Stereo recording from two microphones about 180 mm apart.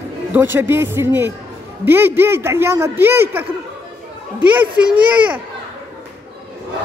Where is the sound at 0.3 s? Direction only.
10° right (ahead or behind).